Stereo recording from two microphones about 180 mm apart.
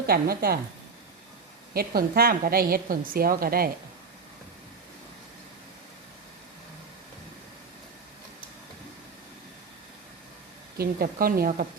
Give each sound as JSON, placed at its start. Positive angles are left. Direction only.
{"t": 0.1, "sound": "a woman's voice", "side_deg": -55}
{"t": 1.7, "sound": "a woman's voice", "side_deg": -55}
{"t": 10.8, "sound": "a woman's voice", "side_deg": -55}